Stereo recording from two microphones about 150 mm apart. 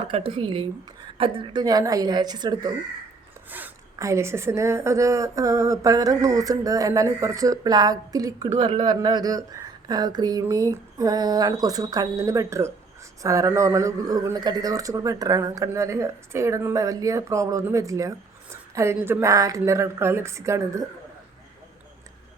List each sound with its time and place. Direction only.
0.1 s speech: 35° right (ahead or behind)
3.5 s speech: 15° right (ahead or behind)